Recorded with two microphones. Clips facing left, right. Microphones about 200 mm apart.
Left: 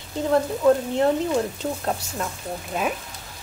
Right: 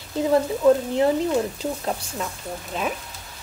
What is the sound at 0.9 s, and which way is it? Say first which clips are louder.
Speech: right 1 dB; centre (ahead or behind).